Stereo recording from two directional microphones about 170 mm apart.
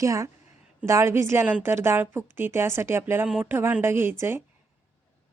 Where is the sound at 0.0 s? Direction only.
20° right (ahead or behind).